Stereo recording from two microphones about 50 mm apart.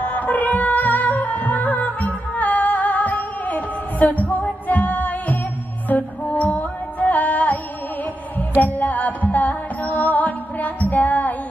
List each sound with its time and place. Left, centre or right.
0.0 s music: left
8.5 s music: left